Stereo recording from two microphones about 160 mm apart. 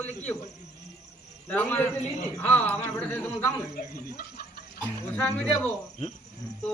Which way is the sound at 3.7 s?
75° left (ahead or behind).